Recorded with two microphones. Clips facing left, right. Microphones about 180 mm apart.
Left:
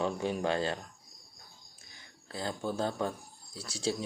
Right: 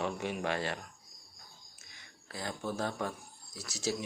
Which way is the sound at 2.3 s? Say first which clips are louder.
Left 3 dB; 30° left (ahead or behind).